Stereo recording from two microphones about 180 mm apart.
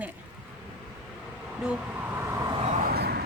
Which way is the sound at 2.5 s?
30° right (ahead or behind).